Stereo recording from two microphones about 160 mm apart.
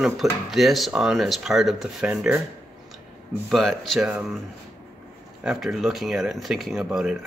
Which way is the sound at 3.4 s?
Centre (ahead or behind).